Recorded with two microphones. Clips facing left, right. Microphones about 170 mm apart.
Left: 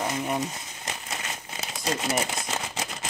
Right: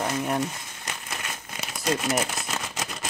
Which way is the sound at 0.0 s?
15° left (ahead or behind).